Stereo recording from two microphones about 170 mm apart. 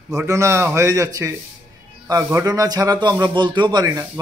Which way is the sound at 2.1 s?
20° right (ahead or behind).